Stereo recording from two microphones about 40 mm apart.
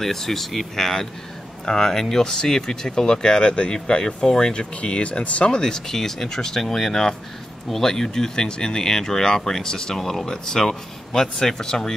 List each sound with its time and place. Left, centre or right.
0.0 s speech: centre; by 5.5 s left
5.5 s speech: centre